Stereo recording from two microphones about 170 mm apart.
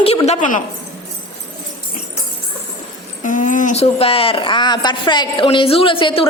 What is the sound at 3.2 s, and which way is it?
Speech, 50° left (ahead or behind).